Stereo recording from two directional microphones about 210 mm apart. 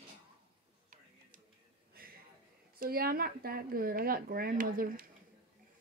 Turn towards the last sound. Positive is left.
turn(degrees=-45)  # may be behind; listen again after turning